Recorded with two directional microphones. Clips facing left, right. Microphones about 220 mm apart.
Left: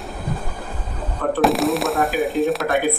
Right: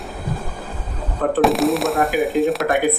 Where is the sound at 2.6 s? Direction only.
15° right (ahead or behind).